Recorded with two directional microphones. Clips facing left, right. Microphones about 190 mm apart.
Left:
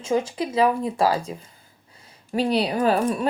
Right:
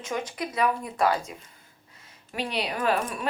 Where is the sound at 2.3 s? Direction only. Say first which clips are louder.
Left 8 dB; 35° left (ahead or behind).